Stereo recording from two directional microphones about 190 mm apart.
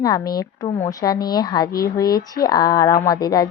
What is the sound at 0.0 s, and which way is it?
Speech, 20° left (ahead or behind).